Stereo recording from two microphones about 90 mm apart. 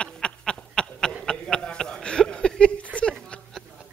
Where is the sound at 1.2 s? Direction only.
10° left (ahead or behind).